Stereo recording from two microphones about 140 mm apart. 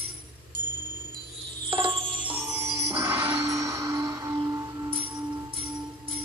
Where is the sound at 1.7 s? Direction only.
35° right (ahead or behind).